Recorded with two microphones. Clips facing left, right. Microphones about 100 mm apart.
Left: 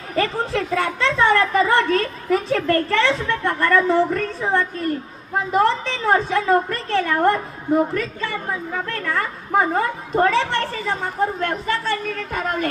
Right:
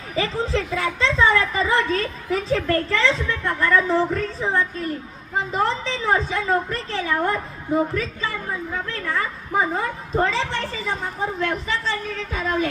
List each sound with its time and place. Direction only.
0.2 s a woman's voice: 65° left (ahead or behind)
5.5 s a woman's voice: 60° left (ahead or behind)